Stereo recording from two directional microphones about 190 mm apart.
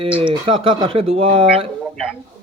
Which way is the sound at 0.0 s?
30° right (ahead or behind).